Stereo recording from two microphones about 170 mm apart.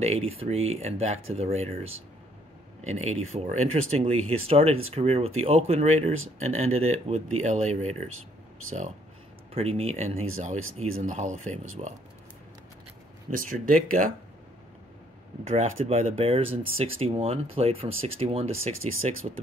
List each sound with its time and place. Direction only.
0.0 s speech: 35° right (ahead or behind)
9.5 s speech: 35° right (ahead or behind)
13.3 s speech: 55° right (ahead or behind)
15.4 s speech: 40° right (ahead or behind)